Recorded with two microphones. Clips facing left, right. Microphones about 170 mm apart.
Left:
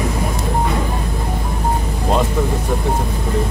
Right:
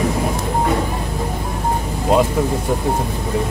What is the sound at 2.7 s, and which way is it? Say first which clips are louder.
Speech: right 1 dB; 15° right (ahead or behind).